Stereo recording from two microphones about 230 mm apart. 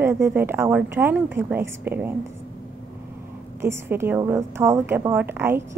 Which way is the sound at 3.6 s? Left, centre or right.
Centre.